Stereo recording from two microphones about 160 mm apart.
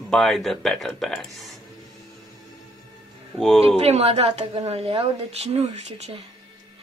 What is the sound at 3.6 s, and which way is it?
A woman's voice, 40° right (ahead or behind).